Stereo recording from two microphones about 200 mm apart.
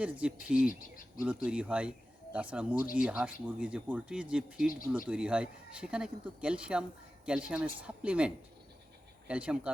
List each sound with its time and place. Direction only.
0.0 s speech: 5° right (ahead or behind)
0.7 s speech: 45° left (ahead or behind)
1.2 s speech: 5° right (ahead or behind)